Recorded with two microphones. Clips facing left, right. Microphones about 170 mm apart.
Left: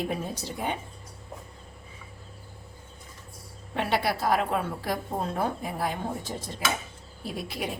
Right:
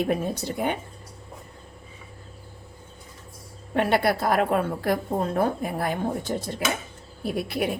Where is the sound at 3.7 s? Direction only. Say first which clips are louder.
Right 5 dB; 55° right (ahead or behind).